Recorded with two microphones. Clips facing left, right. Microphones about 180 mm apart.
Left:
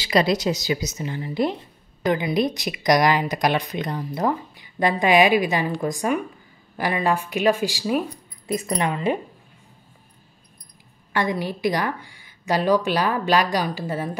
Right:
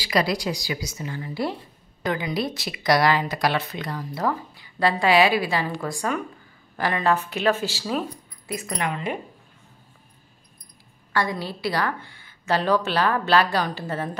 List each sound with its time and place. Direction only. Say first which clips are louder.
0.0 s a woman's voice: left 4 dB; 25° left (ahead or behind)
8.5 s a woman's voice: left 4 dB; 30° left (ahead or behind)
11.1 s a woman's voice: left 2 dB; 15° left (ahead or behind)